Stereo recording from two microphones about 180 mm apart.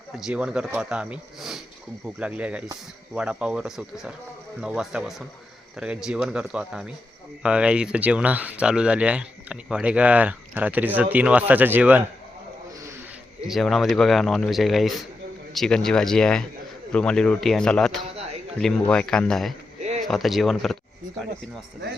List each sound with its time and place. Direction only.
0.2 s speech: 5° right (ahead or behind)
13.5 s speech: centre (ahead or behind)
19.8 s a sound: 40° right (ahead or behind)
20.1 s speech: centre (ahead or behind)